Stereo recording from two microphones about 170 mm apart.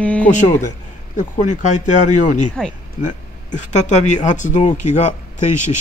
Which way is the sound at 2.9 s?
45° left (ahead or behind).